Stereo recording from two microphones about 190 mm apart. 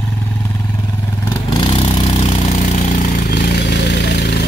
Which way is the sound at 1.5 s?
30° left (ahead or behind).